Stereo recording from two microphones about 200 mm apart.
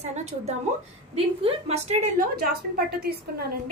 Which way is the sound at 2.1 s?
50° right (ahead or behind).